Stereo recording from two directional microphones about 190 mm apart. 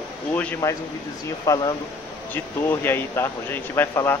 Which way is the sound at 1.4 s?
20° left (ahead or behind).